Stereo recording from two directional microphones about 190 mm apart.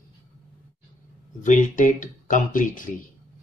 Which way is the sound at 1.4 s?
40° left (ahead or behind).